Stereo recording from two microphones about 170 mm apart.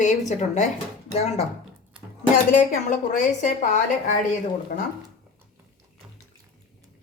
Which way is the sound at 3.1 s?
45° left (ahead or behind).